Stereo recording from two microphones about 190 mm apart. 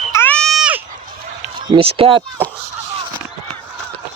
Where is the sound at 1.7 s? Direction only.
30° right (ahead or behind).